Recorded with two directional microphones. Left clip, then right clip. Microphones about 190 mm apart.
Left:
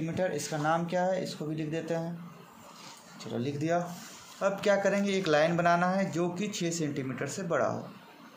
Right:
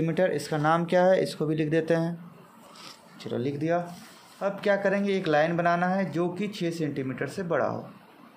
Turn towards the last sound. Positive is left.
turn(degrees=-10)  # may be behind; listen again after turning